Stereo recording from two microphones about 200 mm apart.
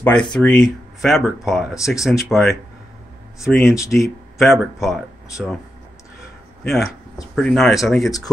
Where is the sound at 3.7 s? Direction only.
15° left (ahead or behind).